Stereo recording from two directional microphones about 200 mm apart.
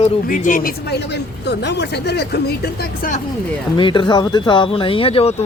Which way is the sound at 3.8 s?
25° left (ahead or behind).